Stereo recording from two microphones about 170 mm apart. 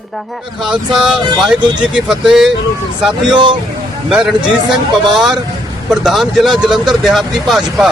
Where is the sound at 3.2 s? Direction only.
25° right (ahead or behind).